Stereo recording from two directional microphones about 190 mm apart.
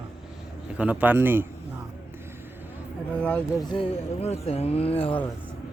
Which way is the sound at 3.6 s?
25° left (ahead or behind).